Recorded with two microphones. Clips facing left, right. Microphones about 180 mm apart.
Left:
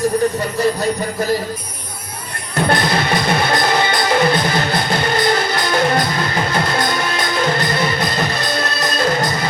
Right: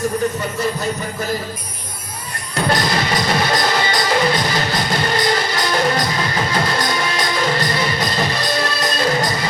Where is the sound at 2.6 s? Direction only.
60° left (ahead or behind).